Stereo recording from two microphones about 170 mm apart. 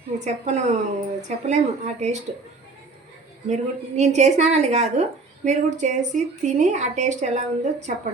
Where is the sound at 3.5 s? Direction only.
40° right (ahead or behind).